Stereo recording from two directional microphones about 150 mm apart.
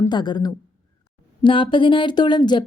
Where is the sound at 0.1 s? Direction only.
30° left (ahead or behind).